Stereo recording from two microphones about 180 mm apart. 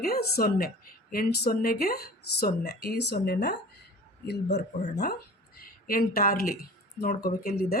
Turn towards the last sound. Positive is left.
turn(degrees=55)  # may be behind; listen again after turning